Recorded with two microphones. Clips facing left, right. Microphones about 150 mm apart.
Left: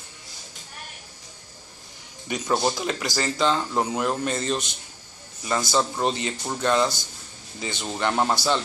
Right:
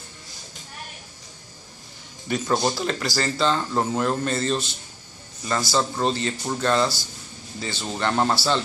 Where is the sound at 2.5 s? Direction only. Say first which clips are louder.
Even; centre (ahead or behind).